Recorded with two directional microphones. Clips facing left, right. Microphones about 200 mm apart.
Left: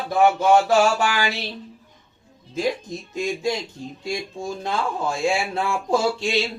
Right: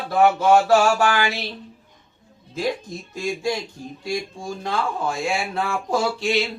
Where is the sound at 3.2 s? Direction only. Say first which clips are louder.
Left 1 dB; 20° left (ahead or behind).